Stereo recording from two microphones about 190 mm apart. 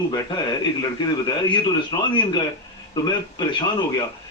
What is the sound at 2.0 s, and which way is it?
Speech, 25° left (ahead or behind).